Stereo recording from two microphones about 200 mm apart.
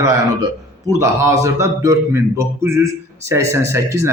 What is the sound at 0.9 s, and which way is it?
A man's voice, 15° right (ahead or behind).